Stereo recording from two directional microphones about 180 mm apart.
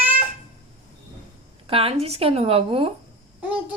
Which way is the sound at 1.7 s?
30° right (ahead or behind).